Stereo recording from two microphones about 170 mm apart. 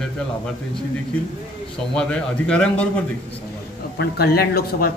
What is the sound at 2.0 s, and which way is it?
Speech, 5° left (ahead or behind).